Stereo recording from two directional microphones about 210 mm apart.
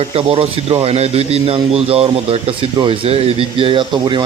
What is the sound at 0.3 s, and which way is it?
Speech, 25° right (ahead or behind).